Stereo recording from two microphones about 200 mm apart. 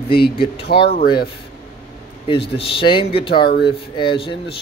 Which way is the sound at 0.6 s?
50° left (ahead or behind).